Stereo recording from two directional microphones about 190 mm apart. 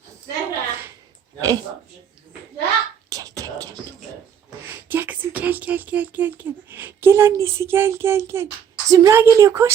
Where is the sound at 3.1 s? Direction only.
20° right (ahead or behind).